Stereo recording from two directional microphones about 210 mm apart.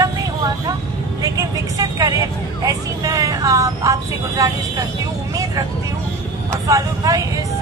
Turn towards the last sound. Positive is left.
turn(degrees=-15)  # may be behind; listen again after turning